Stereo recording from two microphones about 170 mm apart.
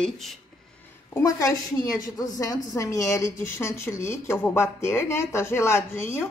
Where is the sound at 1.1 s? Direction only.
20° left (ahead or behind).